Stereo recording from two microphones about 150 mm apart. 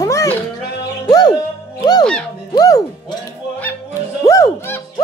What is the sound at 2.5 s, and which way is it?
Speech, 25° left (ahead or behind).